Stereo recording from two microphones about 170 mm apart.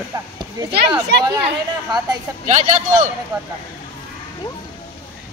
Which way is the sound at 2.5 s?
45° right (ahead or behind).